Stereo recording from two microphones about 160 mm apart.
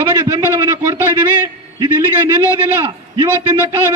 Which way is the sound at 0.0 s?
15° right (ahead or behind).